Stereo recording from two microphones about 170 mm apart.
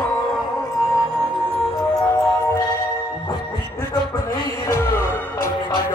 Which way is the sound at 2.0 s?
20° left (ahead or behind).